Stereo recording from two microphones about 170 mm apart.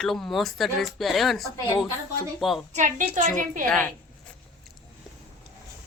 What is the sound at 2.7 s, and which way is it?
Speech, 50° right (ahead or behind).